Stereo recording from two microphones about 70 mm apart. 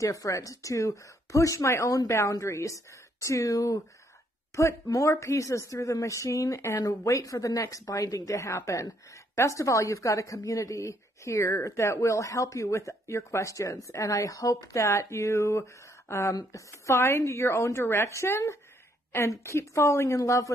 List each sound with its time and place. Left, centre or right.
0.0 s a woman's voice: left